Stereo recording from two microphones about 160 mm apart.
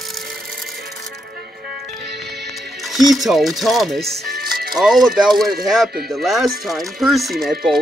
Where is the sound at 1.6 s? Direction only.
90° right.